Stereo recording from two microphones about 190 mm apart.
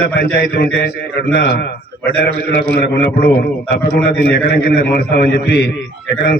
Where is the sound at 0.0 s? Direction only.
55° left (ahead or behind).